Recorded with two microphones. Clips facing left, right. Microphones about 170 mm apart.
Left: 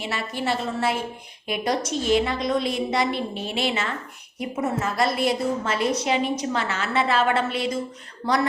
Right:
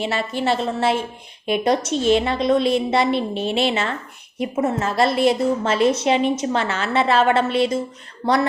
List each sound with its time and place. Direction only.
0.0 s a woman's voice: 25° right (ahead or behind)